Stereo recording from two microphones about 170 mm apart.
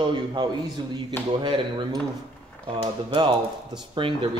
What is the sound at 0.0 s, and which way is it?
A man's voice, 25° right (ahead or behind).